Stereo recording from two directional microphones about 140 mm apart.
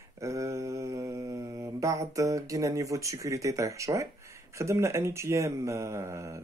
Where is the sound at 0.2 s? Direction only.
20° right (ahead or behind).